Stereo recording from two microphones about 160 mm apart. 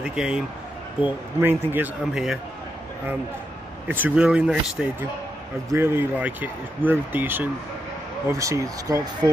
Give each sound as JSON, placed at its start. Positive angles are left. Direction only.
{"t": 0.0, "sound": "speech", "side_deg": -5}
{"t": 3.8, "sound": "speech", "side_deg": -10}